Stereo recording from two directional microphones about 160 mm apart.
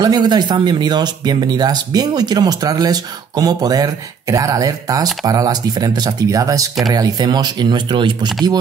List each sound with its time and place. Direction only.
0.0 s speech: 25° right (ahead or behind)